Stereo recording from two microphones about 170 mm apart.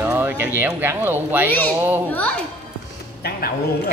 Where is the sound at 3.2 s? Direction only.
65° left (ahead or behind).